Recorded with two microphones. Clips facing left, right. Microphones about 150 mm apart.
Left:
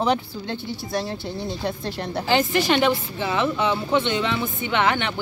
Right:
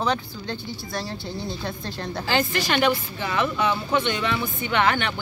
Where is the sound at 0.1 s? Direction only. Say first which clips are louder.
Left 3 dB; 20° left (ahead or behind).